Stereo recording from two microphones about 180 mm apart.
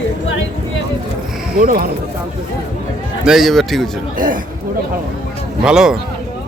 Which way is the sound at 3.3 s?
Centre (ahead or behind).